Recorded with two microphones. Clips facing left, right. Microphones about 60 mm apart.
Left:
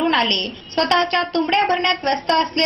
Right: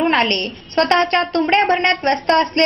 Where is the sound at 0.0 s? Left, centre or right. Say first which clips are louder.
Right 2 dB; right.